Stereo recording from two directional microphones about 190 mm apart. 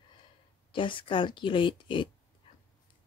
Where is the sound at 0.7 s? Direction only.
25° left (ahead or behind).